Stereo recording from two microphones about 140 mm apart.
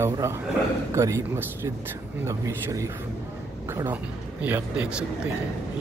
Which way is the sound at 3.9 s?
10° right (ahead or behind).